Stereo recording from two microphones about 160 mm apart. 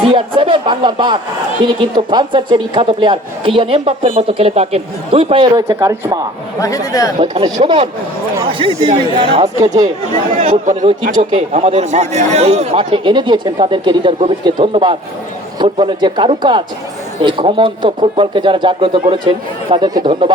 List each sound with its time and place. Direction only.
0.1 s a man's voice: 30° right (ahead or behind)
5.6 s a man's voice: 20° right (ahead or behind)
6.6 s speech: 20° left (ahead or behind)
7.2 s a man's voice: 35° right (ahead or behind)
9.6 s a man's voice: 25° right (ahead or behind)
10.4 s a man's voice: 45° right (ahead or behind); by 20.3 s 30° right (ahead or behind)